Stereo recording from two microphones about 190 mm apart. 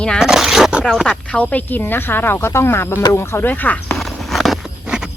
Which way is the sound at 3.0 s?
15° left (ahead or behind).